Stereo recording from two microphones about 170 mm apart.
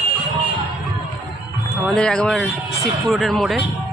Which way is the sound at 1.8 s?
5° left (ahead or behind).